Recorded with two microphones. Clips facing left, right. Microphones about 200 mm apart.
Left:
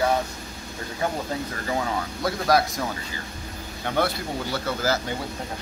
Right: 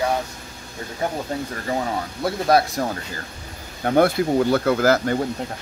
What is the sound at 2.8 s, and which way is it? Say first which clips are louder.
Speech: right 4 dB; 45° right (ahead or behind).